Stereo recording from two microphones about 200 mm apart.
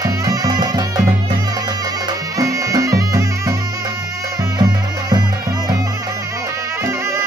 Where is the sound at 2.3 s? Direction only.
15° right (ahead or behind).